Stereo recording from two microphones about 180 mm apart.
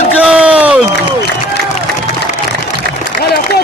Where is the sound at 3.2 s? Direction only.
60° left (ahead or behind).